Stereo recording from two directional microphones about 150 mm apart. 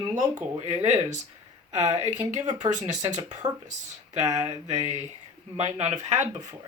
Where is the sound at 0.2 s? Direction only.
55° right (ahead or behind).